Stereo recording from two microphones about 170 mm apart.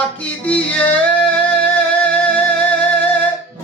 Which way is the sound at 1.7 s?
10° left (ahead or behind).